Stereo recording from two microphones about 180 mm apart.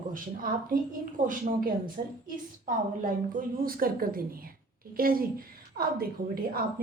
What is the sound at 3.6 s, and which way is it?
A woman's voice, 55° right (ahead or behind).